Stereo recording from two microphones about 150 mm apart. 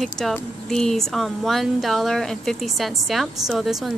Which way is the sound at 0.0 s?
Centre (ahead or behind).